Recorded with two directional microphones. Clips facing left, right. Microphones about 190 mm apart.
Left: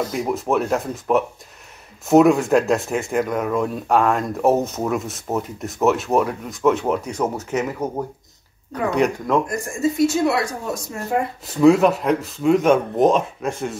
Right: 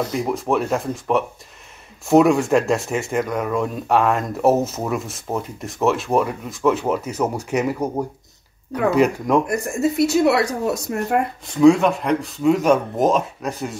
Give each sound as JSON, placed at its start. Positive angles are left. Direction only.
{"t": 0.1, "sound": "speech", "side_deg": 0}
{"t": 9.5, "sound": "speech", "side_deg": -65}
{"t": 11.4, "sound": "speech", "side_deg": 5}